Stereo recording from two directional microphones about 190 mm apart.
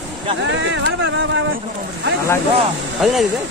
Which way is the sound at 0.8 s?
70° right (ahead or behind).